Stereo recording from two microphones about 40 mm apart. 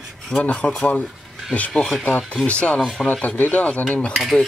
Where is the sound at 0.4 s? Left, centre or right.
Left.